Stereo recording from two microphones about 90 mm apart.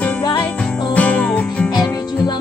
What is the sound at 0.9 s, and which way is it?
Music, 15° left (ahead or behind).